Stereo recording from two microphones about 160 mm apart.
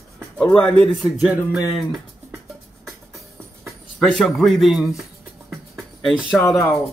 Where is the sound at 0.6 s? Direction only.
5° left (ahead or behind).